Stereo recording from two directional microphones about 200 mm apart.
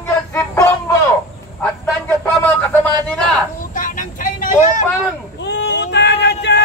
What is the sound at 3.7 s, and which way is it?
Vehicle, 40° left (ahead or behind).